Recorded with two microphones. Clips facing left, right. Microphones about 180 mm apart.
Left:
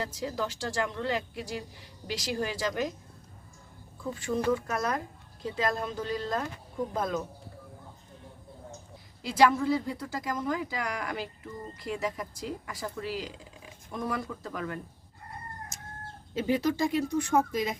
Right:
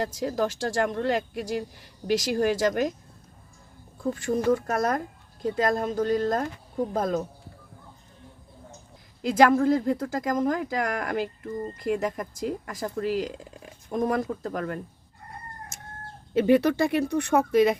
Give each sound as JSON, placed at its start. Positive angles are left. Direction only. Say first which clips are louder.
{"t": 0.0, "sound": "speech", "louder": "right 6 dB", "side_deg": -45}
{"t": 4.1, "sound": "speech", "louder": "right 4 dB", "side_deg": -50}
{"t": 9.2, "sound": "speech", "louder": "right 5 dB", "side_deg": -50}
{"t": 15.7, "sound": "chicken", "louder": "right 2 dB", "side_deg": -65}
{"t": 16.3, "sound": "speech", "louder": "right 7 dB", "side_deg": -65}